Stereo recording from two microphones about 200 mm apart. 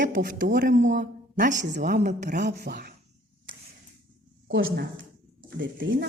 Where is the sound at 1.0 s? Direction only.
45° right (ahead or behind).